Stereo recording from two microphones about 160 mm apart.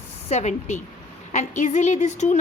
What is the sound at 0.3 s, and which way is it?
A woman's voice, 45° left (ahead or behind).